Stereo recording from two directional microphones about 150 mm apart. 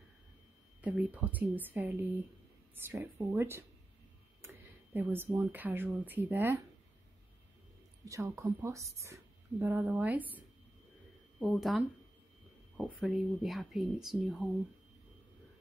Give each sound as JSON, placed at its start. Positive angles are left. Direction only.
{"t": 0.7, "sound": "speech", "side_deg": -10}
{"t": 4.9, "sound": "speech", "side_deg": -15}
{"t": 8.0, "sound": "a woman's voice", "side_deg": -20}
{"t": 11.3, "sound": "speech", "side_deg": 0}